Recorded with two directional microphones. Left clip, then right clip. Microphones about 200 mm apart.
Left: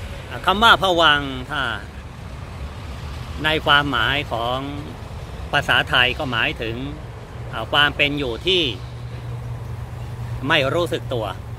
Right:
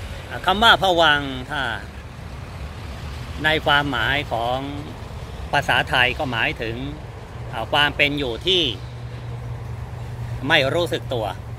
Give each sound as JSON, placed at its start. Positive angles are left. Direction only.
{"t": 0.3, "sound": "speech", "side_deg": 10}
{"t": 3.4, "sound": "speech", "side_deg": 10}
{"t": 7.7, "sound": "speech", "side_deg": 65}
{"t": 8.1, "sound": "speech", "side_deg": 5}
{"t": 10.4, "sound": "speech", "side_deg": 5}